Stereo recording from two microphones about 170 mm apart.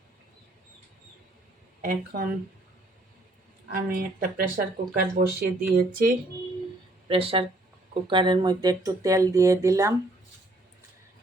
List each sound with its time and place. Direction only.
2.1 s speech: 55° right (ahead or behind)
3.7 s speech: 55° right (ahead or behind)
7.1 s speech: 35° right (ahead or behind); by 9.9 s 20° right (ahead or behind)